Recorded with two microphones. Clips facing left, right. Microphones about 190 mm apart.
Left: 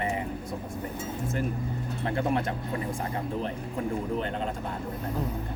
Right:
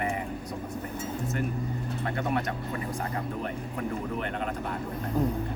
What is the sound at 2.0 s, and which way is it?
A man's voice, 30° left (ahead or behind).